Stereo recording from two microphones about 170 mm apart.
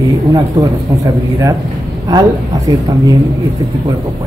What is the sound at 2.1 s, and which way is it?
Speech, 20° right (ahead or behind).